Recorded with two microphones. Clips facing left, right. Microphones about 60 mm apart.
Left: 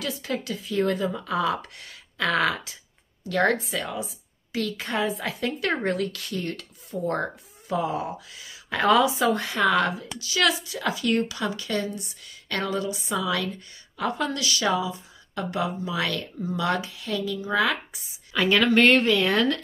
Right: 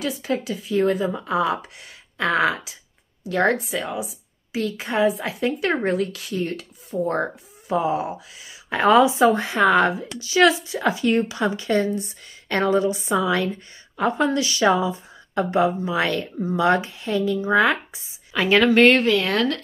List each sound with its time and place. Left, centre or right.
0.0 s a woman's voice: centre
1.0 s a woman's voice: right
18.3 s a woman's voice: centre